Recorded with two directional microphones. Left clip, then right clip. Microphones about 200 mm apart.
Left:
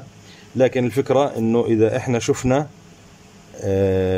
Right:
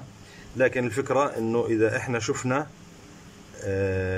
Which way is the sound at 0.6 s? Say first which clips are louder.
Left 6 dB; 20° left (ahead or behind).